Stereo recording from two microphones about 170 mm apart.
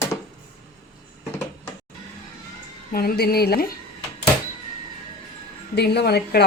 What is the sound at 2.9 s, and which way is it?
Speech, 65° left (ahead or behind).